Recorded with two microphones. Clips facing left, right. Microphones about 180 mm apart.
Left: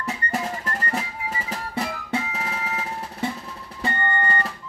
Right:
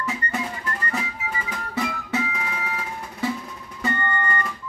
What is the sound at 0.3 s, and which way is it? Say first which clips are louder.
Music: left 1 dB; 40° left (ahead or behind).